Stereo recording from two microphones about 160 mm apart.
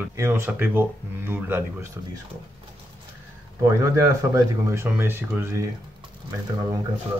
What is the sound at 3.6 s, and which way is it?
Speech, 20° right (ahead or behind).